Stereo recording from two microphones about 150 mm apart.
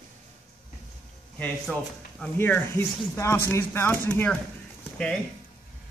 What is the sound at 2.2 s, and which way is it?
Speech, 10° left (ahead or behind).